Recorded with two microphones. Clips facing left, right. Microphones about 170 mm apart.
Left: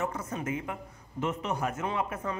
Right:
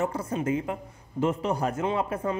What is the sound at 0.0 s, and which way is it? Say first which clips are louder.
A man's voice: right 5 dB; 30° right (ahead or behind).